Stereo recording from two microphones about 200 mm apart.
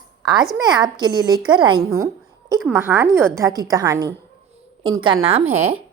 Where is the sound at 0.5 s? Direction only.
20° right (ahead or behind).